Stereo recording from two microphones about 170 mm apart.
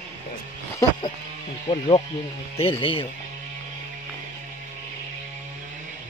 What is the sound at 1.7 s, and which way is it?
Speech, 30° left (ahead or behind).